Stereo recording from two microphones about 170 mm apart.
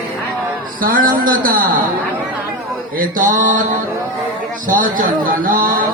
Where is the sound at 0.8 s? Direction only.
55° right (ahead or behind).